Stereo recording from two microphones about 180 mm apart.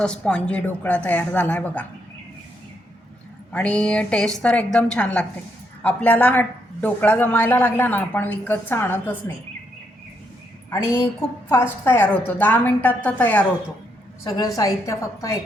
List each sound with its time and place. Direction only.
0.0 s a woman's voice: 5° left (ahead or behind)
3.5 s a woman's voice: 5° left (ahead or behind)
10.7 s a woman's voice: 15° left (ahead or behind)